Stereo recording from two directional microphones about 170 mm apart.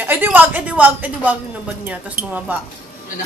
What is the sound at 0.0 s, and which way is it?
A woman's voice, 10° right (ahead or behind).